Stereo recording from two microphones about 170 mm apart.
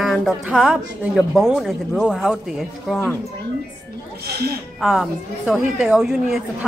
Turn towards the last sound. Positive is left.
turn(degrees=-5)  # may be behind; listen again after turning